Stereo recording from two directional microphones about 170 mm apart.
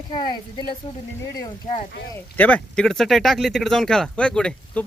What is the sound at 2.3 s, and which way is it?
Speech, 10° left (ahead or behind).